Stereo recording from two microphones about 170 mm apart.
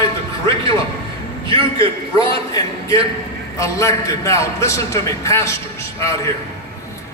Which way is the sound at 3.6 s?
20° left (ahead or behind).